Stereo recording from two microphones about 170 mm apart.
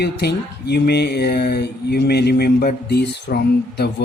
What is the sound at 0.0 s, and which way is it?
Speech, 70° left (ahead or behind).